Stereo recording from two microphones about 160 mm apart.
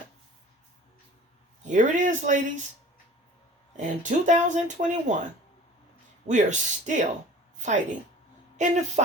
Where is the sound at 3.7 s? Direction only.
50° right (ahead or behind).